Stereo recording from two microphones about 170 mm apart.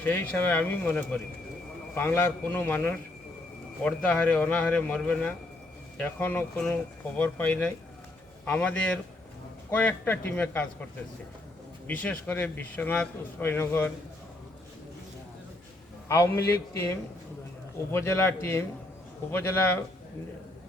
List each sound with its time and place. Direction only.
0.0 s speech: 10° left (ahead or behind)
11.9 s speech: 10° left (ahead or behind)
16.0 s speech: 15° left (ahead or behind)